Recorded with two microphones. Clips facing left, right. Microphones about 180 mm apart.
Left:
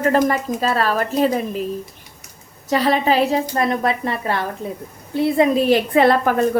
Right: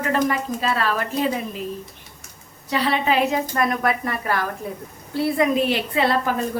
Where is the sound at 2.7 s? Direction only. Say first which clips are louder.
Left 4 dB; 40° left (ahead or behind).